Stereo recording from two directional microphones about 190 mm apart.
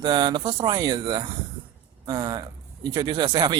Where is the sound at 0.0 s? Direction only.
25° right (ahead or behind).